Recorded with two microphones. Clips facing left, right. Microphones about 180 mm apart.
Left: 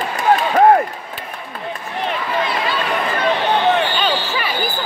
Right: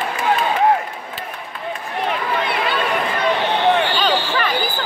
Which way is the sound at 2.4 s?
65° right (ahead or behind).